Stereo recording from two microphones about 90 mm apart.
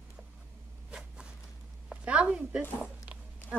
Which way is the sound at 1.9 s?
10° right (ahead or behind).